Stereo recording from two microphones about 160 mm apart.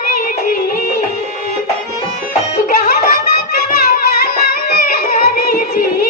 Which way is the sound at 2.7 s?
65° left (ahead or behind).